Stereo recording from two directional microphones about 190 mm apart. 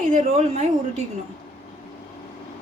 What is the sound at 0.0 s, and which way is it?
Speech, 40° right (ahead or behind).